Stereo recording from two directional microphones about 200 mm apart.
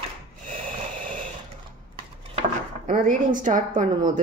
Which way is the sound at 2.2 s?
35° right (ahead or behind).